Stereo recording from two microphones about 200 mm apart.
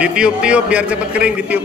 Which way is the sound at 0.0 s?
5° right (ahead or behind).